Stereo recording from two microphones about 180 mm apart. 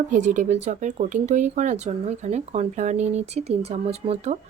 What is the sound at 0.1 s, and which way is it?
Speech, 45° right (ahead or behind).